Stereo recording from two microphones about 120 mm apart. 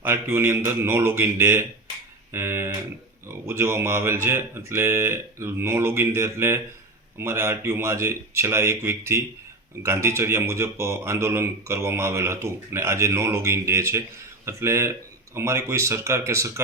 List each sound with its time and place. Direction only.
0.0 s speech: 20° right (ahead or behind)